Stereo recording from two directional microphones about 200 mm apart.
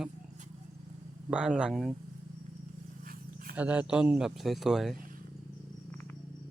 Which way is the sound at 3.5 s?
5° right (ahead or behind).